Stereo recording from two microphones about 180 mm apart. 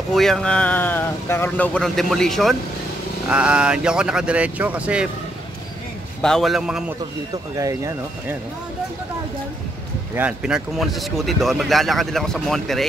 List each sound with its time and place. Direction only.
0.1 s speech: centre (ahead or behind)
6.2 s speech: centre (ahead or behind)
7.5 s speech: 20° right (ahead or behind)
10.1 s speech: 5° right (ahead or behind)